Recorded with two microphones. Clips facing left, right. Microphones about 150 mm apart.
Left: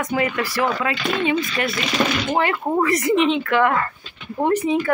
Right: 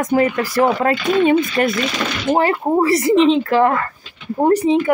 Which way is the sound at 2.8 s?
30° right (ahead or behind).